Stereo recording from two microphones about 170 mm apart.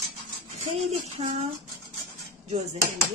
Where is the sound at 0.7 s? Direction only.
45° right (ahead or behind).